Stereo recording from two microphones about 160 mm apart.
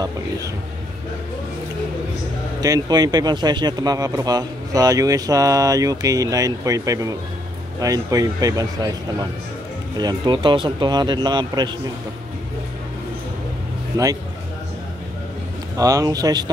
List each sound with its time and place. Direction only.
2.6 s speech: 25° right (ahead or behind)
9.9 s speech: 25° right (ahead or behind)
15.8 s speech: 20° right (ahead or behind)